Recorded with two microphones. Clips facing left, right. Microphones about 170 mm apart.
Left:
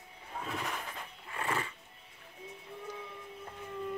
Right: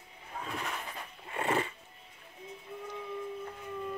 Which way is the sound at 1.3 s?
25° right (ahead or behind).